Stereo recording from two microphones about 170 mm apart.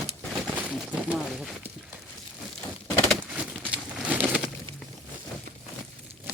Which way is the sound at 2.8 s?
5° left (ahead or behind).